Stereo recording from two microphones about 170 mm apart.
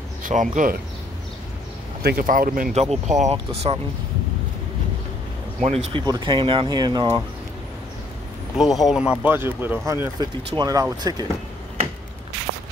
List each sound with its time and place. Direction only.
0.2 s speech: 50° right (ahead or behind)
2.0 s speech: 55° right (ahead or behind)
2.7 s speech: 40° right (ahead or behind)
5.9 s speech: 25° right (ahead or behind)
8.5 s speech: centre (ahead or behind); by 11.2 s 25° right (ahead or behind)